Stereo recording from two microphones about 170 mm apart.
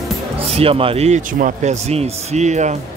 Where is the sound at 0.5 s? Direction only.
35° right (ahead or behind).